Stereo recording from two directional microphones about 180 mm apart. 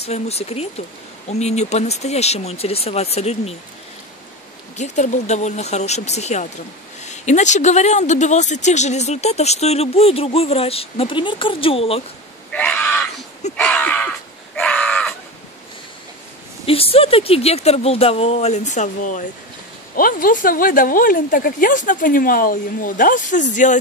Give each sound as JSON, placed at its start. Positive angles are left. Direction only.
{"t": 0.0, "sound": "speech", "side_deg": 35}
{"t": 4.7, "sound": "speech", "side_deg": 40}
{"t": 12.5, "sound": "a sound", "side_deg": 10}
{"t": 13.6, "sound": "crow", "side_deg": 5}
{"t": 16.6, "sound": "speech", "side_deg": 30}